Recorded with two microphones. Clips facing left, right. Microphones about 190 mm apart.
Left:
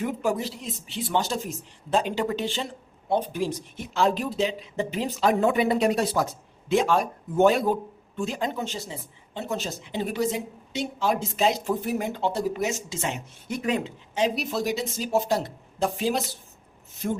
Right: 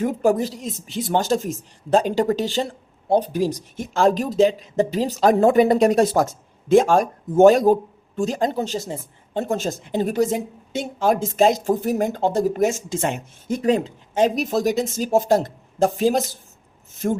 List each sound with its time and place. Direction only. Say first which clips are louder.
0.0 s speech: right 7 dB; 45° right (ahead or behind)
13.6 s speech: right 7 dB; 40° right (ahead or behind)